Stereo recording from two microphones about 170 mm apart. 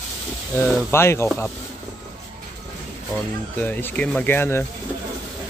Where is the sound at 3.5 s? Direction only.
10° left (ahead or behind).